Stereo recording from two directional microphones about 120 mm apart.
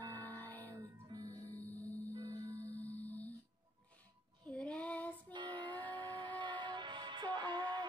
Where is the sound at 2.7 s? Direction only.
15° left (ahead or behind).